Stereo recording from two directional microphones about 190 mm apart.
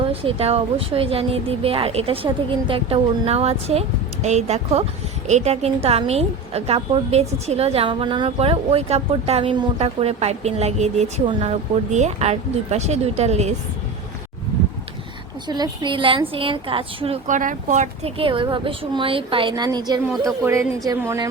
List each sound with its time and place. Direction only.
0.0 s a woman's voice: 30° right (ahead or behind)
15.4 s a woman's voice: 20° right (ahead or behind)
17.2 s a woman's voice: 40° right (ahead or behind); by 21.2 s 15° right (ahead or behind)